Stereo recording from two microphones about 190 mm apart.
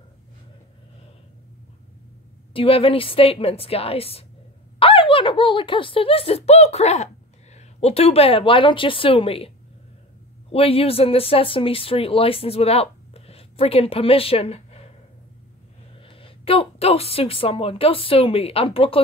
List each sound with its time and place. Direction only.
2.5 s a woman's voice: 30° left (ahead or behind)
10.5 s speech: 30° left (ahead or behind)
16.0 s a woman's voice: 30° left (ahead or behind)